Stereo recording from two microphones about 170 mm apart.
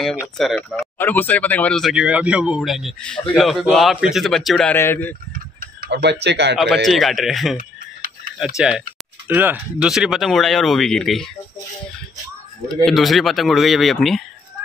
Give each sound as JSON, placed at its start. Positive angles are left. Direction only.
{"t": 0.2, "sound": "speech", "side_deg": 0}
{"t": 4.7, "sound": "speech", "side_deg": 15}
{"t": 5.6, "sound": "tick-tock", "side_deg": -70}
{"t": 6.2, "sound": "a man's voice", "side_deg": -90}
{"t": 6.5, "sound": "speech", "side_deg": 0}
{"t": 8.5, "sound": "speech", "side_deg": -5}
{"t": 12.8, "sound": "speech", "side_deg": 0}